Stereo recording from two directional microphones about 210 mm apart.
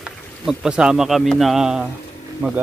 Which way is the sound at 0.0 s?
Centre (ahead or behind).